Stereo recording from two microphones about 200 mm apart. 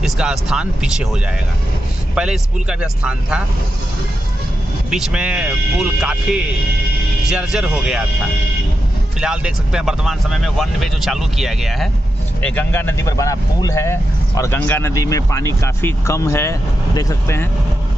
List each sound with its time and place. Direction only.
0.0 s speech: 5° right (ahead or behind)
2.1 s speech: 5° right (ahead or behind)
4.9 s speech: 5° right (ahead or behind)
9.2 s speech: 5° right (ahead or behind); by 17.5 s 15° left (ahead or behind)